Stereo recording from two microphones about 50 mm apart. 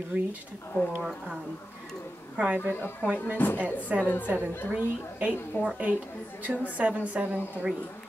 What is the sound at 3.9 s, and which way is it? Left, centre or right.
Speech, right.